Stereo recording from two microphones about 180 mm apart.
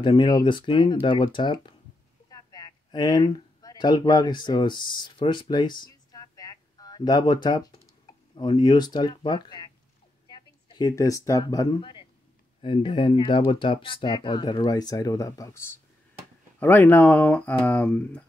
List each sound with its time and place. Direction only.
0.0 s speech: 25° left (ahead or behind)
2.2 s a sound: 25° left (ahead or behind)
8.4 s speech: 25° left (ahead or behind); by 18.2 s 5° left (ahead or behind)